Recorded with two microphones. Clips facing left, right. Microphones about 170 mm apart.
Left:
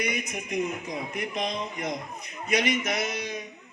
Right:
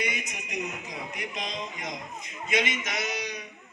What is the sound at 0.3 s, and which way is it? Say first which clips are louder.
Speech: left 6 dB; 50° left (ahead or behind).